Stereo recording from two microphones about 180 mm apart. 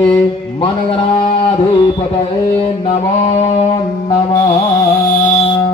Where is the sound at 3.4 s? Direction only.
35° left (ahead or behind).